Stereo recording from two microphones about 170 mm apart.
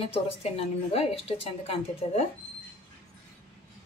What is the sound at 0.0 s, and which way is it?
A woman's voice, 35° left (ahead or behind).